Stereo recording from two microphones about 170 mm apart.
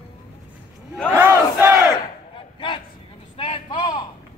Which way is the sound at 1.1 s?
15° right (ahead or behind).